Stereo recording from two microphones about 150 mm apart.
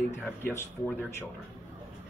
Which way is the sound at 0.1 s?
15° left (ahead or behind).